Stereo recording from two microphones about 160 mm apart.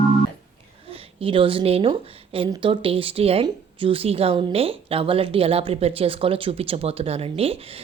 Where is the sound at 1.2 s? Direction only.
35° right (ahead or behind).